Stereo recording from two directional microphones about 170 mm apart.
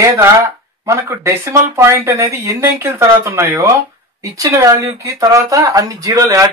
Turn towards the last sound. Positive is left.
turn(degrees=-20)  # may be behind; listen again after turning